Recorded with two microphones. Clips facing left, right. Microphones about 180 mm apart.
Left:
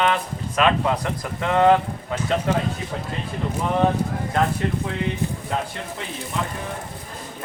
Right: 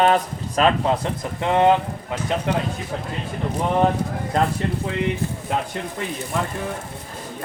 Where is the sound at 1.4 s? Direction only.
20° right (ahead or behind).